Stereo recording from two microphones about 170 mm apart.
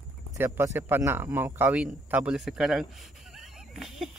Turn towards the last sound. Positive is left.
turn(degrees=0)  # may be behind; listen again after turning